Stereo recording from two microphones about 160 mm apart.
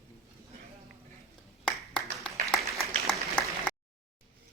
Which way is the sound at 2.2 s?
Centre (ahead or behind).